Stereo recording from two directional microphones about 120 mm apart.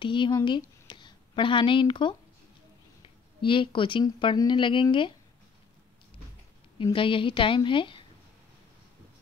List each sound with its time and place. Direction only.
0.0 s speech: 40° left (ahead or behind)
3.3 s a woman's voice: 45° left (ahead or behind)
6.8 s a woman's voice: 45° left (ahead or behind)